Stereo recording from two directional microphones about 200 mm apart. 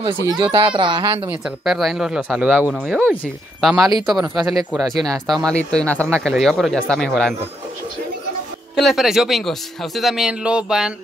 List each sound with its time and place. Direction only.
0.0 s speech: 25° right (ahead or behind)
1.3 s a man's voice: centre (ahead or behind)
8.7 s a man's voice: centre (ahead or behind)